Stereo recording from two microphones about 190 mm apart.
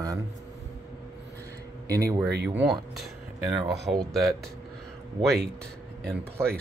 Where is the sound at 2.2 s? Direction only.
60° right (ahead or behind).